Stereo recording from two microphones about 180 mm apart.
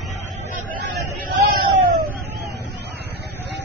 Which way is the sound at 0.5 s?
50° right (ahead or behind).